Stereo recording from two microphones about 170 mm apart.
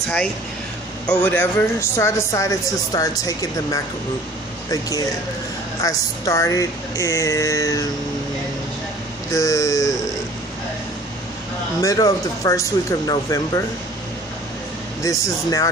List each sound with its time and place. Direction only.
1.0 s speech: 5° left (ahead or behind)
9.3 s speech: 20° left (ahead or behind)
11.8 s speech: 20° left (ahead or behind)
15.0 s speech: 20° left (ahead or behind)